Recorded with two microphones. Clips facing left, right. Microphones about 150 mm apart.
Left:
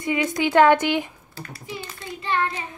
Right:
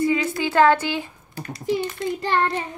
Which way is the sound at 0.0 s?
20° left (ahead or behind).